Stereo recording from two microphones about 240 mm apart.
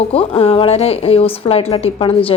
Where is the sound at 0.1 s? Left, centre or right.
Left.